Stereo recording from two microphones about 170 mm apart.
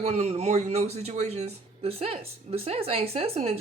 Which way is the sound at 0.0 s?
40° right (ahead or behind).